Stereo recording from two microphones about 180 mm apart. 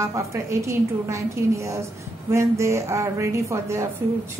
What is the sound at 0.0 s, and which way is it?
A woman's voice, 15° right (ahead or behind).